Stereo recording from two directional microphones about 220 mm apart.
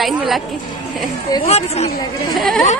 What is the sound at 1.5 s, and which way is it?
Speech, 30° left (ahead or behind).